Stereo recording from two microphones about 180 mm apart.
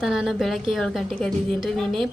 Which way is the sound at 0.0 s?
Centre (ahead or behind).